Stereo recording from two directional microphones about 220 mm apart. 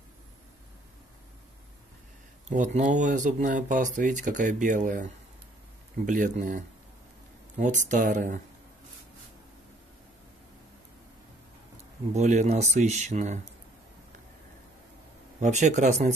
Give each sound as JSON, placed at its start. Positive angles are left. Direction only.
{"t": 2.5, "sound": "speech", "side_deg": -35}
{"t": 6.0, "sound": "speech", "side_deg": -35}
{"t": 12.1, "sound": "speech", "side_deg": -30}
{"t": 15.4, "sound": "speech", "side_deg": -30}